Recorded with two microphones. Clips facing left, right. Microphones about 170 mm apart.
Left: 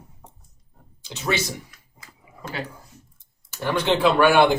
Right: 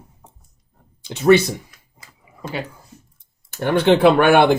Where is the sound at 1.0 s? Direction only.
55° right (ahead or behind).